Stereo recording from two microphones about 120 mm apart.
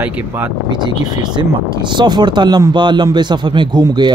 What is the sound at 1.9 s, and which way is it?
Speech, 40° right (ahead or behind).